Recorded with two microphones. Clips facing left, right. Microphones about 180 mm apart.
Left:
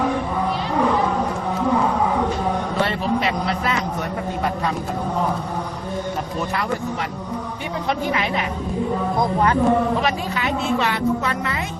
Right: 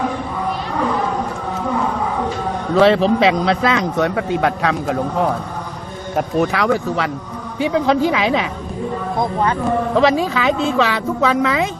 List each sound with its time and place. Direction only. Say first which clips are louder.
2.7 s a man's voice: right 14 dB; 90° right
6.1 s a man's voice: right 7 dB; 80° right
9.9 s a man's voice: right 7 dB; 90° right